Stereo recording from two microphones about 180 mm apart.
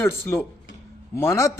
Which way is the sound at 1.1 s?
15° left (ahead or behind).